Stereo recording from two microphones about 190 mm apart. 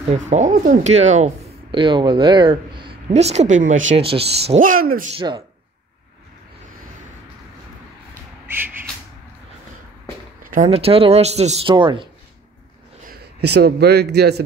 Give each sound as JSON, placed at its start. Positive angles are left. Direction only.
{"t": 0.1, "sound": "speech", "side_deg": -40}
{"t": 1.7, "sound": "speech", "side_deg": -25}
{"t": 4.0, "sound": "speech", "side_deg": -30}
{"t": 4.6, "sound": "speech", "side_deg": -50}
{"t": 5.1, "sound": "speech", "side_deg": -25}
{"t": 8.1, "sound": "crow", "side_deg": -10}
{"t": 10.4, "sound": "a sound", "side_deg": -45}
{"t": 10.7, "sound": "speech", "side_deg": -30}
{"t": 13.1, "sound": "a man's voice", "side_deg": -60}